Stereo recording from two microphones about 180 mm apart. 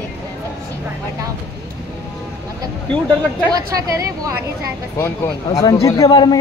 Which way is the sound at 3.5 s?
20° right (ahead or behind).